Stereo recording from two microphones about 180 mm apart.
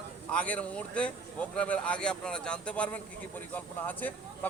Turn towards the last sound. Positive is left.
turn(degrees=10)  # may be behind; listen again after turning